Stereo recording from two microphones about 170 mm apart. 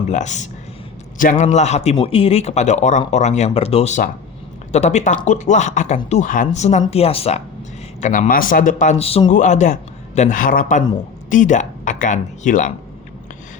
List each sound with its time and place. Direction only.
0.1 s a man's voice: 45° left (ahead or behind)
9.3 s speech: 45° left (ahead or behind)